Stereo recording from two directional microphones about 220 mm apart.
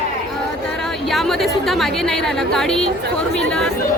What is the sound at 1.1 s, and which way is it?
A woman's voice, centre (ahead or behind).